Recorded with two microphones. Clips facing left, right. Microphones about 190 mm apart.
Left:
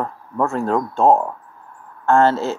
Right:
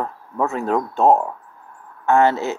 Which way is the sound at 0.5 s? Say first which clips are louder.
Even; 20° right (ahead or behind).